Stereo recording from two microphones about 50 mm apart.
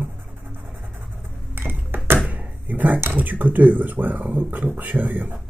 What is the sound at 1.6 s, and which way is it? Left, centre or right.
Ping, right.